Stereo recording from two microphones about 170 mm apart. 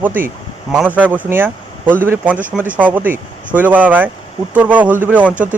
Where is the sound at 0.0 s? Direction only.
10° right (ahead or behind).